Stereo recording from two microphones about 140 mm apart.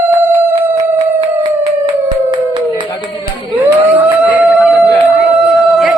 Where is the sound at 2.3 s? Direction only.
35° right (ahead or behind).